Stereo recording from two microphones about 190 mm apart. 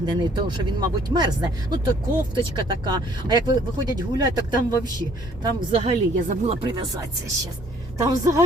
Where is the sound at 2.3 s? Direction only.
25° right (ahead or behind).